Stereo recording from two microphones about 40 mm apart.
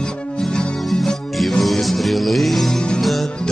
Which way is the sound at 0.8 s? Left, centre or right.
Centre.